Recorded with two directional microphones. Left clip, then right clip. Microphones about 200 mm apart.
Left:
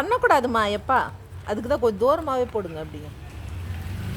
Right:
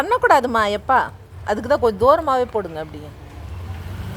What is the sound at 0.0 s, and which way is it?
A woman's voice, centre (ahead or behind).